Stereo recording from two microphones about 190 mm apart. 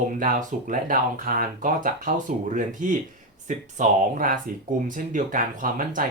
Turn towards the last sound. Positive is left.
turn(degrees=-45)  # may be behind; listen again after turning